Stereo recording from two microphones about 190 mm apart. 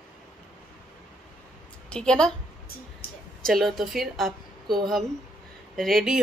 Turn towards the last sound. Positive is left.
turn(degrees=0)  # may be behind; listen again after turning